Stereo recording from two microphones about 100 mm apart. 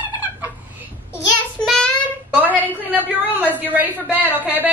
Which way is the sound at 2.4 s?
20° right (ahead or behind).